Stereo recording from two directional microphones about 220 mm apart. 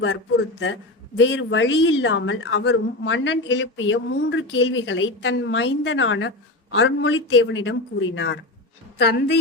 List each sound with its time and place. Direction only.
0.6 s a woman's voice: 60° left (ahead or behind)